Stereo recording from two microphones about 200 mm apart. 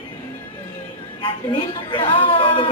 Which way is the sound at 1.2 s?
25° left (ahead or behind).